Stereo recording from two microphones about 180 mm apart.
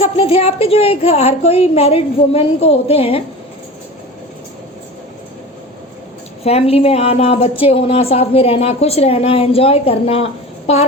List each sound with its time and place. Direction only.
0.2 s a woman's voice: 35° left (ahead or behind)
6.4 s a woman's voice: 35° left (ahead or behind)